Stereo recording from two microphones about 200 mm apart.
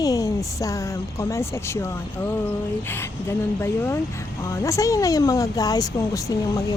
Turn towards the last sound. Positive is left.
turn(degrees=15)  # may be behind; listen again after turning